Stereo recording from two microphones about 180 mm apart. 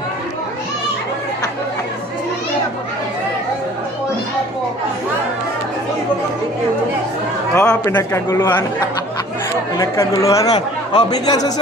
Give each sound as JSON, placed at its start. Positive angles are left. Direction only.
{"t": 7.5, "sound": "a man's voice", "side_deg": 10}
{"t": 9.8, "sound": "speech", "side_deg": 15}